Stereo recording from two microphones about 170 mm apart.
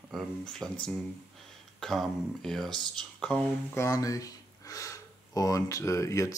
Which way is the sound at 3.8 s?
20° left (ahead or behind).